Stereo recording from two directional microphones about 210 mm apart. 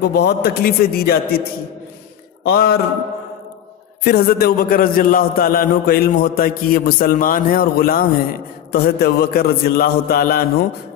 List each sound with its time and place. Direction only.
0.0 s a man's voice: 50° left (ahead or behind)
2.4 s a man's voice: 50° left (ahead or behind)
4.0 s a man's voice: 45° left (ahead or behind)